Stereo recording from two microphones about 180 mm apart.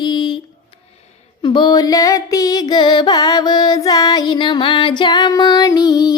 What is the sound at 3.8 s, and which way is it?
Music, 20° left (ahead or behind).